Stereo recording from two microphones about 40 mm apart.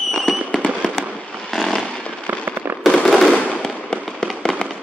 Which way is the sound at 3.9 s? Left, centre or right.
Left.